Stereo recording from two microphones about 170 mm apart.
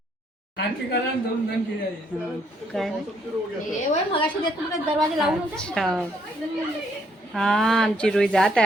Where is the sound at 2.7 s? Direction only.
Centre (ahead or behind).